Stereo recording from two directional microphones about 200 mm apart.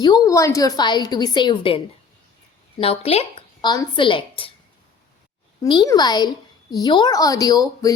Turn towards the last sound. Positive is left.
turn(degrees=20)  # may be behind; listen again after turning